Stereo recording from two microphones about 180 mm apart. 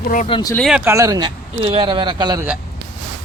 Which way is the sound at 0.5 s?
Centre (ahead or behind).